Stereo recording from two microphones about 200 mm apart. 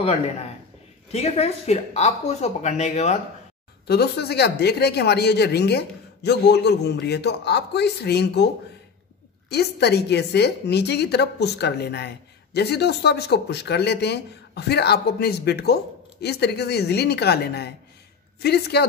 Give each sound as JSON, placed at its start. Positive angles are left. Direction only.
{"t": 0.0, "sound": "speech", "side_deg": 30}
{"t": 3.8, "sound": "speech", "side_deg": 55}
{"t": 9.5, "sound": "a woman's voice", "side_deg": 55}